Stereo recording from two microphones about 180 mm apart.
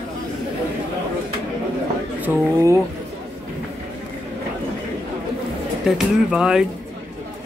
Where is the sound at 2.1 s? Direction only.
15° right (ahead or behind).